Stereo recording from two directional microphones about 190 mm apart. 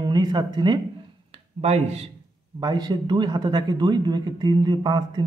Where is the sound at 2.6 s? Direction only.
20° right (ahead or behind).